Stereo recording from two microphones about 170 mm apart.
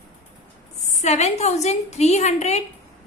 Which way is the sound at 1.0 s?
40° left (ahead or behind).